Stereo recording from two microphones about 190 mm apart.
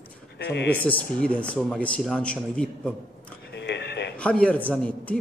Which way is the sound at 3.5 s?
65° left (ahead or behind).